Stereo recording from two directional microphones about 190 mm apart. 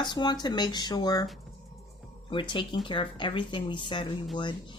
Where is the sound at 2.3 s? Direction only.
25° left (ahead or behind).